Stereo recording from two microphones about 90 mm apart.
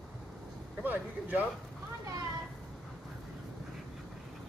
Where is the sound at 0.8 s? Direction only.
20° right (ahead or behind).